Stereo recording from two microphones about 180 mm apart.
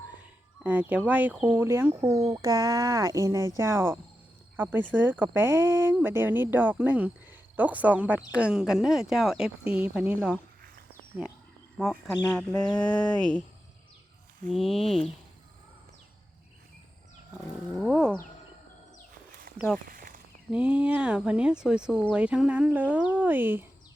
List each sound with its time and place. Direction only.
0.6 s speech: 10° right (ahead or behind)
11.8 s speech: centre (ahead or behind)
14.5 s speech: centre (ahead or behind)
17.7 s speech: centre (ahead or behind)
19.5 s a sound: 55° right (ahead or behind)
20.5 s speech: 5° right (ahead or behind)